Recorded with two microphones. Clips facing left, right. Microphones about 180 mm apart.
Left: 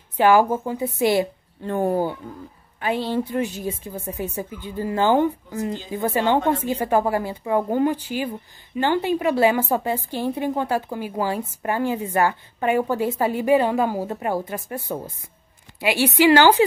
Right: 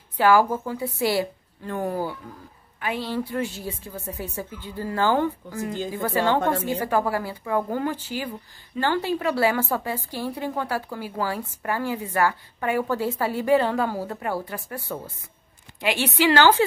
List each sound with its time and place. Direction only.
0.2 s a woman's voice: 20° left (ahead or behind)